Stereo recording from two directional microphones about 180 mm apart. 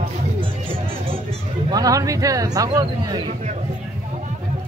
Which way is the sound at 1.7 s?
20° right (ahead or behind).